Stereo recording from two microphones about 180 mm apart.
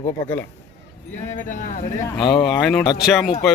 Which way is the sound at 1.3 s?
45° left (ahead or behind).